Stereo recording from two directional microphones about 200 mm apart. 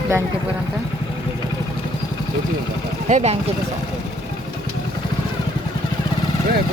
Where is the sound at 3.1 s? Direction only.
30° right (ahead or behind).